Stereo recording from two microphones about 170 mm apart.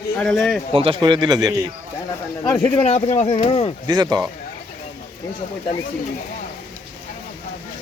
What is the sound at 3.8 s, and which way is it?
Speech, 25° right (ahead or behind).